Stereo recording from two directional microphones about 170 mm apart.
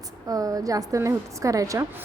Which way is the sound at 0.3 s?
20° right (ahead or behind).